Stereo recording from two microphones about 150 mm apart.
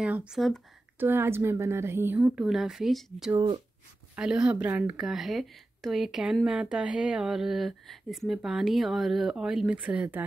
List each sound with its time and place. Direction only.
0.0 s speech: 5° right (ahead or behind)
0.9 s a woman's voice: 15° right (ahead or behind)
2.1 s speech: 5° right (ahead or behind)
3.3 s speech: 25° right (ahead or behind)
4.1 s speech: 5° right (ahead or behind)